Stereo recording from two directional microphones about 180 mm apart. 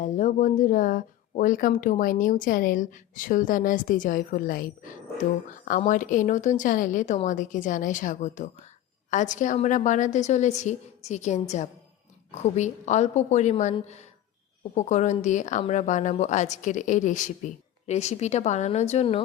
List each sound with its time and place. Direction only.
0.0 s speech: 45° left (ahead or behind)
5.6 s a woman's voice: 45° left (ahead or behind)